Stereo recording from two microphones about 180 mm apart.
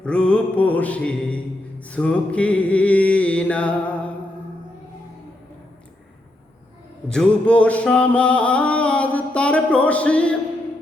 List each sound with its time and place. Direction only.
0.0 s music: 5° left (ahead or behind)
7.1 s music: 5° left (ahead or behind)